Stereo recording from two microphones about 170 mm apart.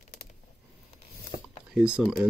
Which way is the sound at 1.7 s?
5° right (ahead or behind).